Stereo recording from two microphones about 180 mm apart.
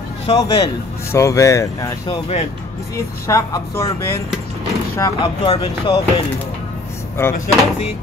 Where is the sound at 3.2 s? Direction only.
15° left (ahead or behind).